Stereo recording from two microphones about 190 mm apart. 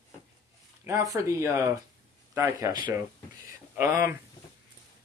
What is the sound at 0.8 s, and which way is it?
A man's voice, 15° right (ahead or behind).